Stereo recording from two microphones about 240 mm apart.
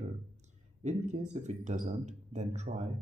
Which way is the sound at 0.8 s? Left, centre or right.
Right.